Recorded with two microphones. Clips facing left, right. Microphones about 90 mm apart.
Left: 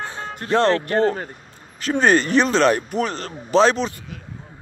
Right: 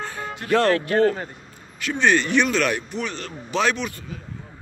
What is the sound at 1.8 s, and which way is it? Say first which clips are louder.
Speech: left 3 dB; 40° left (ahead or behind).